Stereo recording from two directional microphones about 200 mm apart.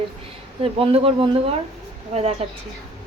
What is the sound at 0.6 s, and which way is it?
Speech, 30° right (ahead or behind).